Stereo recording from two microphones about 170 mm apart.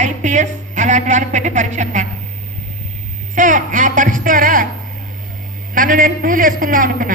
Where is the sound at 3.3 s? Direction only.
50° right (ahead or behind).